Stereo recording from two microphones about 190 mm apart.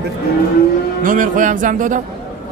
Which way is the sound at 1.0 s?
45° right (ahead or behind).